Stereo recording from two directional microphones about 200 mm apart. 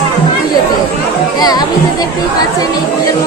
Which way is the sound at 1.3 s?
20° left (ahead or behind).